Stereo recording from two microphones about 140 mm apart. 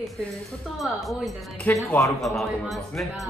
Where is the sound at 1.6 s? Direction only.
15° left (ahead or behind).